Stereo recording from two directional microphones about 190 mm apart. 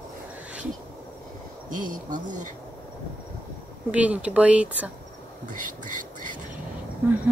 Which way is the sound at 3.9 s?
5° right (ahead or behind).